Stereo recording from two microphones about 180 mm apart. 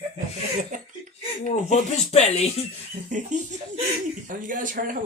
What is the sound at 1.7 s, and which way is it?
Speech, 35° left (ahead or behind).